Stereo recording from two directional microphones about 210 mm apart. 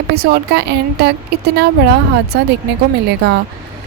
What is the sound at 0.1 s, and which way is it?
A woman's voice, 50° right (ahead or behind).